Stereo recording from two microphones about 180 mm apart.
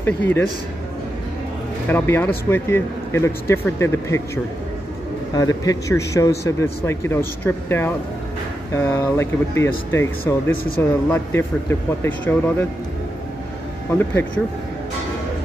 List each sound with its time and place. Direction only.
0.0 s speech: 10° left (ahead or behind)
1.9 s speech: 10° left (ahead or behind)
5.3 s speech: 20° left (ahead or behind)
13.8 s speech: 10° left (ahead or behind)